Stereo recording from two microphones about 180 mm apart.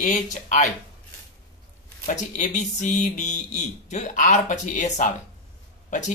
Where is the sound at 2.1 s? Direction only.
45° left (ahead or behind).